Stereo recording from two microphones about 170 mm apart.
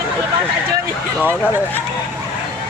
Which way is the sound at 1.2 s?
10° right (ahead or behind).